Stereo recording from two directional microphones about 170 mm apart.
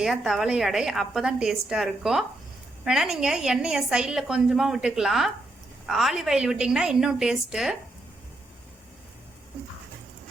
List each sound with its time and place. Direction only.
0.0 s a woman's voice: centre (ahead or behind)